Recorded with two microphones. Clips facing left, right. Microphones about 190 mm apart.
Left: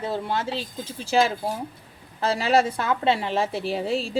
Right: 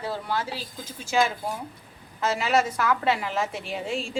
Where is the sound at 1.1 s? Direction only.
35° left (ahead or behind).